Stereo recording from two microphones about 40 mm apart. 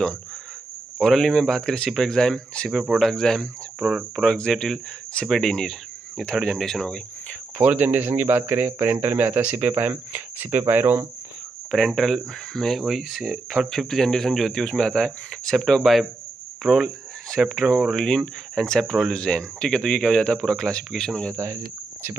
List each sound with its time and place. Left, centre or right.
0.9 s speech: centre
1.9 s speech: centre
2.1 s speech: centre
7.5 s speech: right
10.6 s speech: right
11.7 s speech: centre
12.7 s speech: centre
13.2 s speech: centre
13.7 s speech: centre
15.8 s speech: centre